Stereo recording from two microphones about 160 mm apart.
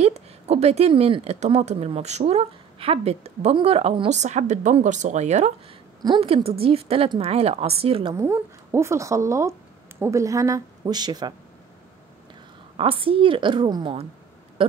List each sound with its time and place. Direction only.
0.0 s speech: 40° right (ahead or behind)
6.0 s speech: 35° right (ahead or behind)
8.2 s speech: 15° right (ahead or behind)
12.7 s speech: 35° right (ahead or behind)